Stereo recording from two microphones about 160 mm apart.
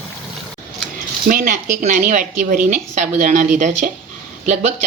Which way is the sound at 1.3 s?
55° right (ahead or behind).